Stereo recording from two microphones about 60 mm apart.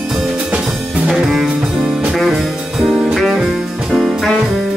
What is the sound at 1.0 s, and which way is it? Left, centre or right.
Music, centre.